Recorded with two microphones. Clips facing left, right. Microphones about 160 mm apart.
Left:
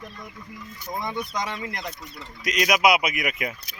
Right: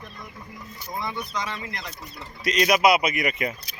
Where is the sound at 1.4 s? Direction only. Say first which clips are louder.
Left 2 dB; 55° left (ahead or behind).